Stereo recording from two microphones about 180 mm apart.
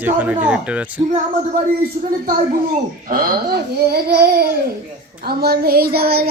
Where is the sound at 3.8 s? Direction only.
60° right (ahead or behind).